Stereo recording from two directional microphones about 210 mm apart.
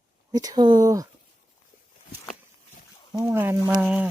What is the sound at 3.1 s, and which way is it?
Speech, 15° right (ahead or behind).